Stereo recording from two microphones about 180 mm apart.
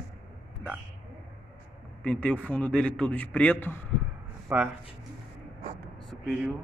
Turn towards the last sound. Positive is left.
turn(degrees=0)  # may be behind; listen again after turning